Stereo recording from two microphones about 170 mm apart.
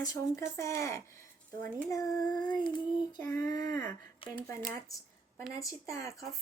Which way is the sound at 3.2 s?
10° left (ahead or behind).